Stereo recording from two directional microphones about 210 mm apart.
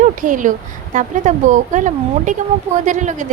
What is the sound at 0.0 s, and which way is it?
A woman's voice, 40° right (ahead or behind).